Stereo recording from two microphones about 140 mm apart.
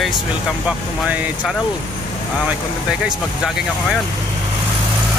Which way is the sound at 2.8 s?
5° right (ahead or behind).